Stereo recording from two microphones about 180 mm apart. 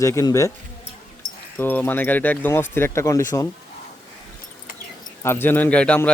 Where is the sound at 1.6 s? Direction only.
10° left (ahead or behind).